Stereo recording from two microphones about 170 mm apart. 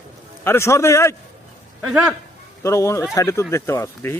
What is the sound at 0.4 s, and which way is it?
Speech, 15° left (ahead or behind).